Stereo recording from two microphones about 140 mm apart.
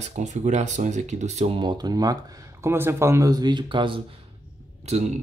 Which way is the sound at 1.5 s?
35° right (ahead or behind).